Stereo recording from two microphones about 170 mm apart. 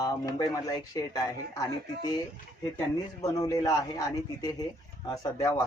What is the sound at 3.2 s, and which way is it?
Speech, 20° left (ahead or behind).